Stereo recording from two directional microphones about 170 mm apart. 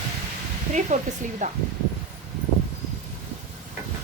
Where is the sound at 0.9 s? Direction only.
45° right (ahead or behind).